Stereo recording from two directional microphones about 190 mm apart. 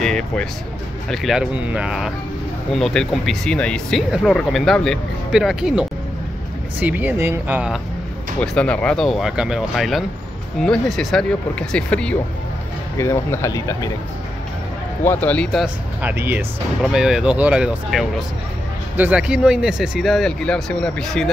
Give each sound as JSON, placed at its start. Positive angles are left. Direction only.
{"t": 0.0, "sound": "speech", "side_deg": 5}
{"t": 8.4, "sound": "speech", "side_deg": 5}
{"t": 15.0, "sound": "speech", "side_deg": 10}